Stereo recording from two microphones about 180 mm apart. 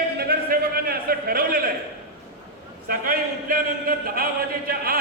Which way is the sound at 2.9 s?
55° right (ahead or behind).